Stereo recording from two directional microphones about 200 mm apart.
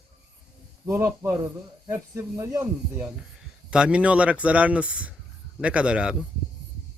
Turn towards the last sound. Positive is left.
turn(degrees=-5)  # may be behind; listen again after turning